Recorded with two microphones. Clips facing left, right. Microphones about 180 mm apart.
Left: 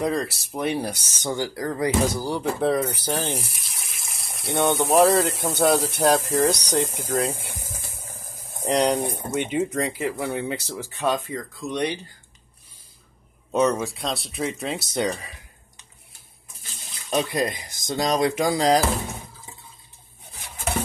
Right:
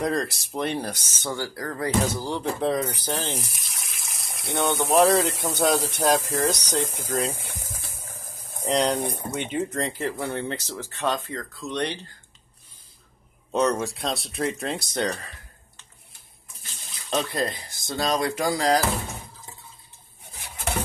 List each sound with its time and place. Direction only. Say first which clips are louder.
0.0 s speech: left 1 dB; 5° left (ahead or behind)
8.6 s speech: left 2 dB; 10° left (ahead or behind)
13.5 s speech: left 2 dB; 5° left (ahead or behind)
17.1 s speech: left 2 dB; 10° left (ahead or behind)